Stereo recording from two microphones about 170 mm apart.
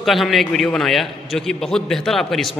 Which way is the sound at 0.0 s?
Centre (ahead or behind).